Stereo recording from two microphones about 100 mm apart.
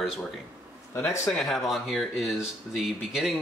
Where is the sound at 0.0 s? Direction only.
Centre (ahead or behind).